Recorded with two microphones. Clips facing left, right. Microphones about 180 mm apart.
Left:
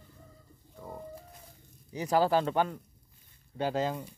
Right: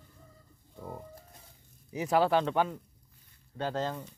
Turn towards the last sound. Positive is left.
turn(degrees=10)  # may be behind; listen again after turning